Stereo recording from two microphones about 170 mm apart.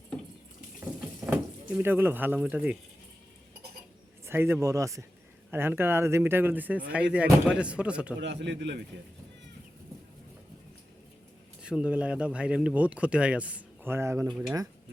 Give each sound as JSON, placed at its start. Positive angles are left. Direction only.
{"t": 1.3, "sound": "speech", "side_deg": -10}
{"t": 4.3, "sound": "speech", "side_deg": -15}
{"t": 8.2, "sound": "a man's voice", "side_deg": -90}
{"t": 11.6, "sound": "speech", "side_deg": -5}